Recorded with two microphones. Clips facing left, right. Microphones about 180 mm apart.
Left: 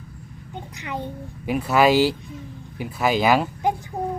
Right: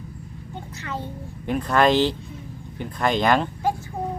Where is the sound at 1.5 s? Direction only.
5° left (ahead or behind).